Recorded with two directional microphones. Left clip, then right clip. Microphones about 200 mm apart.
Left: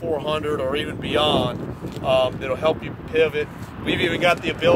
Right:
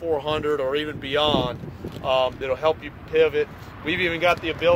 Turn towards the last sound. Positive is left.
turn(degrees=5)  # may be behind; listen again after turning